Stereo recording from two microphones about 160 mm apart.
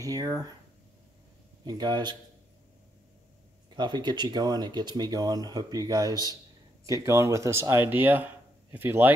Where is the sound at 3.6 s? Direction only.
30° right (ahead or behind).